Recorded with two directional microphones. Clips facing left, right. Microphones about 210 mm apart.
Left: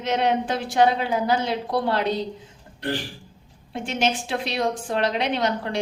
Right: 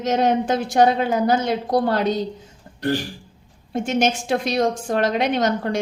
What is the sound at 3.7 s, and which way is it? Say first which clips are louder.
A woman's voice: right 4 dB; 45° right (ahead or behind).